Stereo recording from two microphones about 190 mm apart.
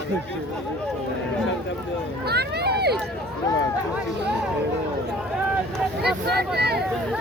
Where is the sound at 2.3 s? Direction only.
60° right (ahead or behind).